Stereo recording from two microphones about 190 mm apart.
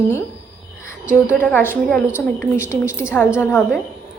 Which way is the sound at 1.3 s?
10° left (ahead or behind).